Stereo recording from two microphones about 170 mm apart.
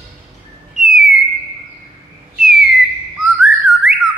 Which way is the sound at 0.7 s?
5° right (ahead or behind).